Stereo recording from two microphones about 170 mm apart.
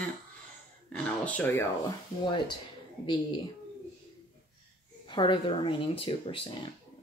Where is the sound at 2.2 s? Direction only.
30° left (ahead or behind).